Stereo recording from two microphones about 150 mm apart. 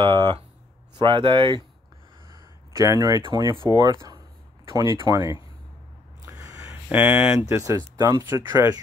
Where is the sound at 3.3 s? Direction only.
30° right (ahead or behind).